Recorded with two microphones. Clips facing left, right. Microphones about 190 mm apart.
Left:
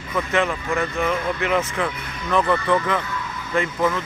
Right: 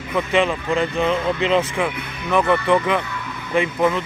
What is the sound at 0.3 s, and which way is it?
Speech, 20° right (ahead or behind).